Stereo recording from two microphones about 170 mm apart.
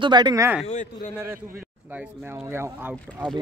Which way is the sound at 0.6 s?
45° left (ahead or behind).